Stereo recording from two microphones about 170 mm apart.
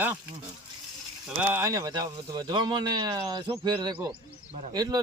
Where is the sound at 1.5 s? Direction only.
20° right (ahead or behind).